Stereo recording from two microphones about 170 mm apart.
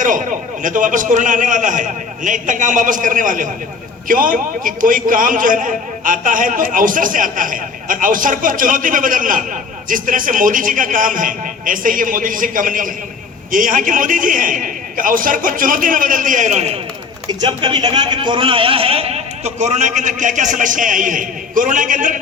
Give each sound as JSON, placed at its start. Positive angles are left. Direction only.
{"t": 0.0, "sound": "a man's voice", "side_deg": -50}
{"t": 17.2, "sound": "a man's voice", "side_deg": -25}